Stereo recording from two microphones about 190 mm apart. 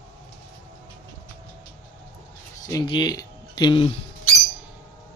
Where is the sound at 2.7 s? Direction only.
20° left (ahead or behind).